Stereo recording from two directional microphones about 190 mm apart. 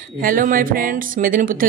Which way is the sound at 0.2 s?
45° right (ahead or behind).